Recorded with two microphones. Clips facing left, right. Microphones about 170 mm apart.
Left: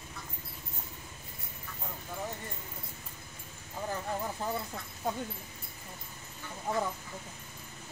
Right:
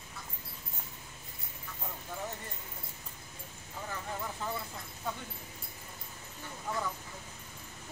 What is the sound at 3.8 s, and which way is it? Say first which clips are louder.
Vehicle: left 5 dB; 30° left (ahead or behind).